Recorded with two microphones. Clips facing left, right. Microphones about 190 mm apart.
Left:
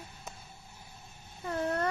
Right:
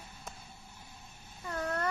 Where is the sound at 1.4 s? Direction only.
30° left (ahead or behind).